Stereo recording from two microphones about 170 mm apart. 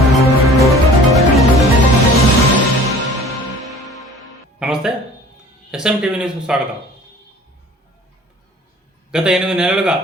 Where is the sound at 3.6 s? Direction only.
Centre (ahead or behind).